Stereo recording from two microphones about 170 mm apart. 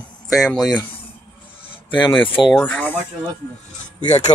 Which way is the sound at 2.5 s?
10° left (ahead or behind).